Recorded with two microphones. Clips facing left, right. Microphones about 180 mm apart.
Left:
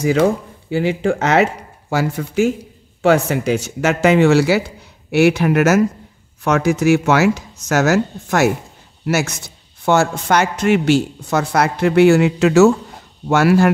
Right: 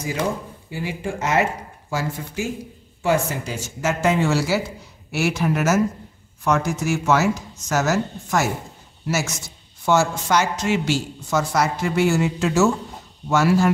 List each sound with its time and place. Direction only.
0.0 s a man's voice: 75° left (ahead or behind)